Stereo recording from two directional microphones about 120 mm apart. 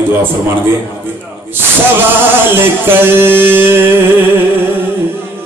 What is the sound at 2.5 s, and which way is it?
Music, 20° right (ahead or behind).